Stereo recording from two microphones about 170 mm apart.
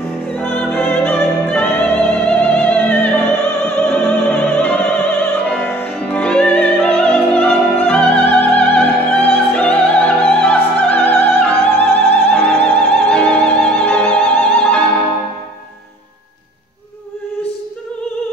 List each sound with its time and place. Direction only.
0.4 s music: 10° left (ahead or behind)
5.2 s opera: 5° left (ahead or behind)